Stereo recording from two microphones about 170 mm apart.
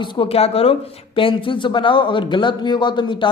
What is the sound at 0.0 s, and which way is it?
Speech, 35° left (ahead or behind).